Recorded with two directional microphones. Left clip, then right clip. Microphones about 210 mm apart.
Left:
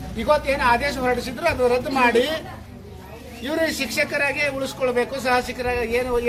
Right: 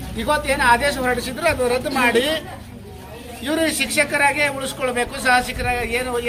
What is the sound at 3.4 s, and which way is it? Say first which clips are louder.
Speech: right 2 dB; 5° right (ahead or behind).